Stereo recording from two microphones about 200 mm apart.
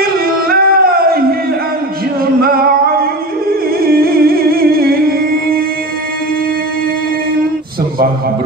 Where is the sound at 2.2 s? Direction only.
50° right (ahead or behind).